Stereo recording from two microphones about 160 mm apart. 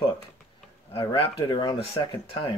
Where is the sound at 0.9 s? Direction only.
35° left (ahead or behind).